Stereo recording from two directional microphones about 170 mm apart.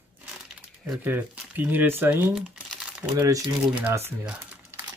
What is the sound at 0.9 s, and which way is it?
Speech, 10° right (ahead or behind).